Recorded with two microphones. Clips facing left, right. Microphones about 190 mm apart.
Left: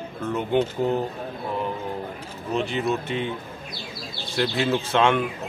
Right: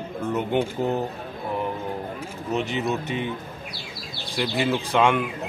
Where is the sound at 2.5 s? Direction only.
20° right (ahead or behind).